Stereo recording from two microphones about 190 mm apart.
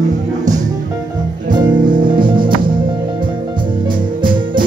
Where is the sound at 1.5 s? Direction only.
25° right (ahead or behind).